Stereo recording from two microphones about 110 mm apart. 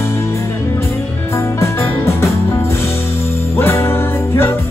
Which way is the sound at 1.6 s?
25° left (ahead or behind).